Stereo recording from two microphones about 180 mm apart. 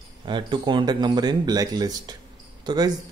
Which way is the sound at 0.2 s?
25° right (ahead or behind).